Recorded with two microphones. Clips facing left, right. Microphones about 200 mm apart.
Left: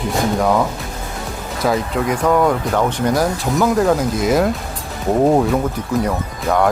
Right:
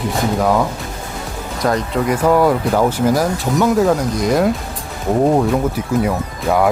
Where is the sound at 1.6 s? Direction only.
Centre (ahead or behind).